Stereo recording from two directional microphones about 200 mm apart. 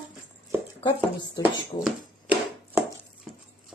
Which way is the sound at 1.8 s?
10° right (ahead or behind).